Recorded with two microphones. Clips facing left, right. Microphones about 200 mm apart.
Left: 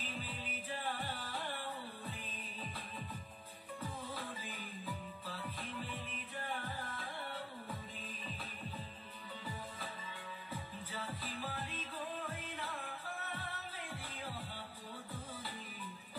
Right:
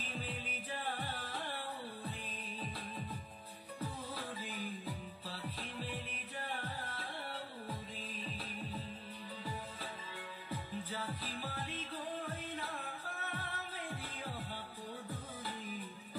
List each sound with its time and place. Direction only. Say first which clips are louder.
0.3 s music: right 1 dB; 35° right (ahead or behind)
4.8 s music: even; 35° right (ahead or behind)
6.9 s music: even; 35° right (ahead or behind)
10.9 s music: right 2 dB; 40° right (ahead or behind)